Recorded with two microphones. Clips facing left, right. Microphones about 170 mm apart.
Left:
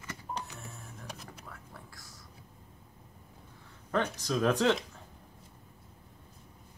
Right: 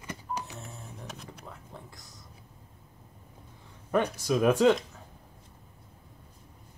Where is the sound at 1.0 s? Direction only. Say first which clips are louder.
Even; centre (ahead or behind).